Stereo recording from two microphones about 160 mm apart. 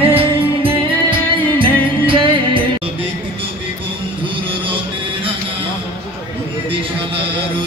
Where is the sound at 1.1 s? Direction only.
30° right (ahead or behind).